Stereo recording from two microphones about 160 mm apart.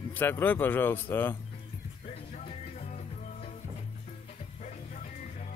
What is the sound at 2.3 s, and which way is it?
Music, 45° left (ahead or behind).